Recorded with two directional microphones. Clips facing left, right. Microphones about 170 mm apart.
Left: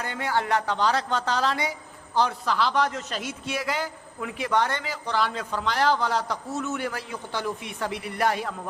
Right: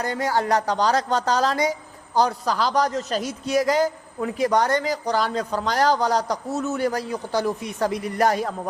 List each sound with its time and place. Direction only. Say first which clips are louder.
0.0 s a man's voice: right 4 dB; 40° right (ahead or behind)